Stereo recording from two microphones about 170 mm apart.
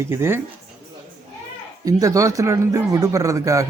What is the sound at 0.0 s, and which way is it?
Speech, 15° right (ahead or behind).